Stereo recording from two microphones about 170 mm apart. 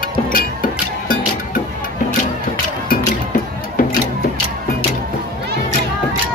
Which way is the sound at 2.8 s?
60° left (ahead or behind).